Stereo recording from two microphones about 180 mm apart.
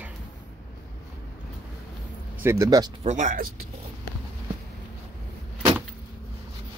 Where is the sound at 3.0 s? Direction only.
40° right (ahead or behind).